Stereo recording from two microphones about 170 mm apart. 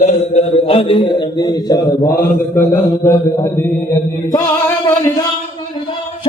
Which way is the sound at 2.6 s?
15° left (ahead or behind).